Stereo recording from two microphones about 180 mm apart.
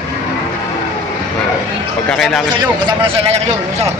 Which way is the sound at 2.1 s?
Centre (ahead or behind).